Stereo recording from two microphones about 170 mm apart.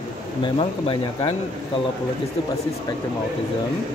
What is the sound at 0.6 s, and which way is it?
Speech, 30° left (ahead or behind).